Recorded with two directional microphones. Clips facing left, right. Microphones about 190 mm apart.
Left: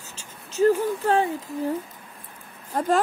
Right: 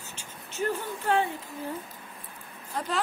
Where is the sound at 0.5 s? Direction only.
40° left (ahead or behind).